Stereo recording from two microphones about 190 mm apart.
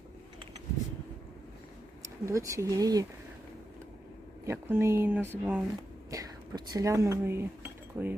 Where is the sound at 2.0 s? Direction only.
15° right (ahead or behind).